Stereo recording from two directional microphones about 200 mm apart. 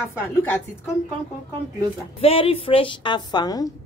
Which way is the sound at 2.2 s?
30° left (ahead or behind).